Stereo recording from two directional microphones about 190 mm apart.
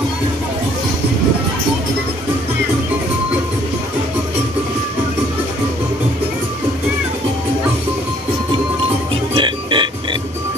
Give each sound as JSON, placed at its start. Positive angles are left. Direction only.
{"t": 9.3, "sound": "music", "side_deg": -25}